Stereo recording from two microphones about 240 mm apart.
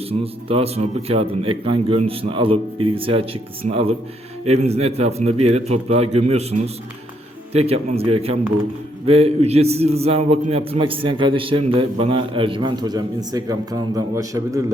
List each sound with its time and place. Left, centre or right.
0.1 s a man's voice: right